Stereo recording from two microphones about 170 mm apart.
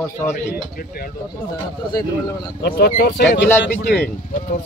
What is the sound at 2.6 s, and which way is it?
Speech, 65° left (ahead or behind).